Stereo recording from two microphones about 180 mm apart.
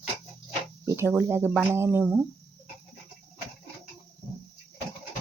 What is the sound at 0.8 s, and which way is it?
Speech, 15° right (ahead or behind).